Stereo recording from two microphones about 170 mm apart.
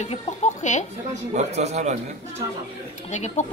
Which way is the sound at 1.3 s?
40° right (ahead or behind).